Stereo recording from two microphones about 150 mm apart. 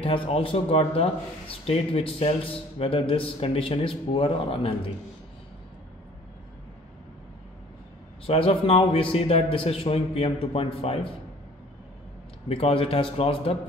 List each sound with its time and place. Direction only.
0.0 s speech: 35° left (ahead or behind)
8.3 s speech: 40° left (ahead or behind)
12.4 s speech: 40° left (ahead or behind)